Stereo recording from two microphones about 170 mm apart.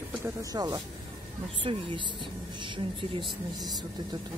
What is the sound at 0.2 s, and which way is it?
Speech, 20° right (ahead or behind).